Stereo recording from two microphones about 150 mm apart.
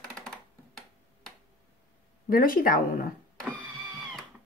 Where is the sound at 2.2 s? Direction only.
70° left (ahead or behind).